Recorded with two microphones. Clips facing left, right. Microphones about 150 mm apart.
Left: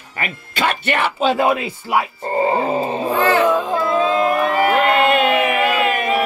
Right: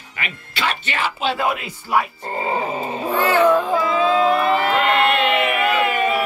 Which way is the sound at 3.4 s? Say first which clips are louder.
Right 1 dB; 15° left (ahead or behind).